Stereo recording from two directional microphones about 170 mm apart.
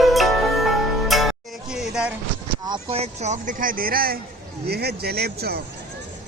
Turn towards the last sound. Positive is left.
turn(degrees=-70)  # may be behind; listen again after turning